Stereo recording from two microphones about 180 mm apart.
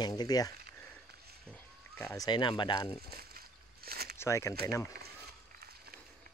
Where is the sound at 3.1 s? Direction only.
55° right (ahead or behind).